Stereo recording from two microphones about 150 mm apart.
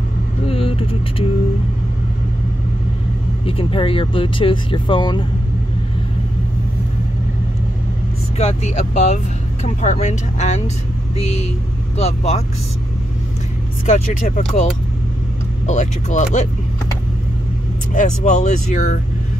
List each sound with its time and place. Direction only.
0.5 s vehicle: 40° left (ahead or behind)
3.4 s speech: 40° left (ahead or behind)
8.4 s speech: 45° left (ahead or behind)
12.0 s speech: 45° left (ahead or behind)
13.8 s speech: 55° left (ahead or behind)
15.6 s speech: 55° left (ahead or behind)
17.9 s speech: 55° left (ahead or behind)